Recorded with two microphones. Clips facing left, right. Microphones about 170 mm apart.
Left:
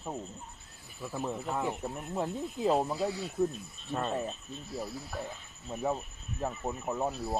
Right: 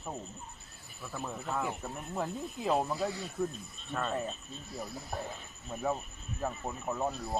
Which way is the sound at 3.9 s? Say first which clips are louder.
Left 2 dB; 30° left (ahead or behind).